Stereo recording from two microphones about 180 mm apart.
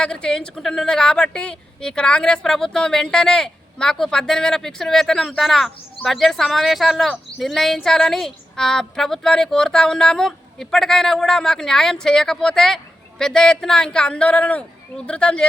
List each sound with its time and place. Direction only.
0.0 s speech: 5° left (ahead or behind)